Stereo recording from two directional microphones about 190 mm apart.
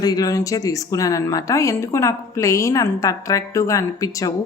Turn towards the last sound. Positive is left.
turn(degrees=15)  # may be behind; listen again after turning